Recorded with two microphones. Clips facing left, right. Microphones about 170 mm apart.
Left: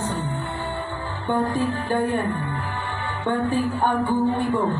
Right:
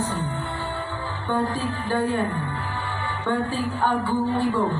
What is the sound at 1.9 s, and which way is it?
Speech, 20° left (ahead or behind).